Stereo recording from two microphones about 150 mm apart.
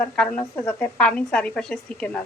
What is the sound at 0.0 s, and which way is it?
Speech, 10° left (ahead or behind).